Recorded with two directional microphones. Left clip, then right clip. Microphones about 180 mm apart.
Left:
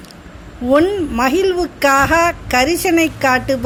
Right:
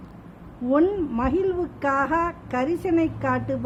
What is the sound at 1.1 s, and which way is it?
A woman's voice, 15° left (ahead or behind).